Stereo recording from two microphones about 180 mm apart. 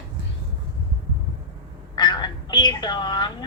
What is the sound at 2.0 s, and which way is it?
Speech, 25° left (ahead or behind).